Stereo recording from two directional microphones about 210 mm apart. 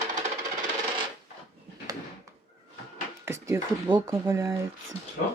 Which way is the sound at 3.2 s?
15° right (ahead or behind).